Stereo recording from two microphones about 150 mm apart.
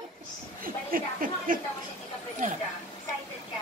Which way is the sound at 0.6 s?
70° right (ahead or behind).